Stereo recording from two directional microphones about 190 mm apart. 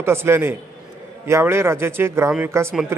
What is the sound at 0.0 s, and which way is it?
A man's voice, 15° right (ahead or behind).